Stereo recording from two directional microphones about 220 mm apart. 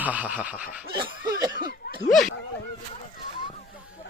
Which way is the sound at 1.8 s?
45° left (ahead or behind).